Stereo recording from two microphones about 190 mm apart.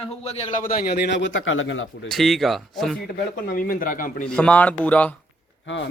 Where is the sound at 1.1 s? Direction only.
80° left.